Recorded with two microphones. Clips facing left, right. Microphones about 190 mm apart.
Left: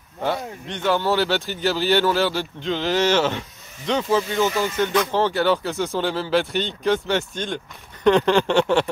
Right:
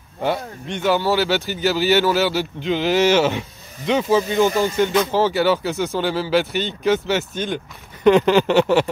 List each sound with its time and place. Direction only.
0.2 s speech: 10° right (ahead or behind)
4.5 s speech: 35° right (ahead or behind)
5.1 s speech: 5° right (ahead or behind)